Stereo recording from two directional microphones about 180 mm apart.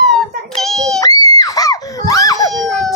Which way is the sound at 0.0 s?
Centre (ahead or behind).